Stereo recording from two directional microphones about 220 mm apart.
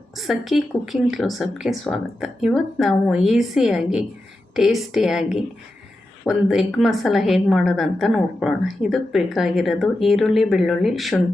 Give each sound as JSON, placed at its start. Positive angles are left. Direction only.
{"t": 0.2, "sound": "a woman's voice", "side_deg": 0}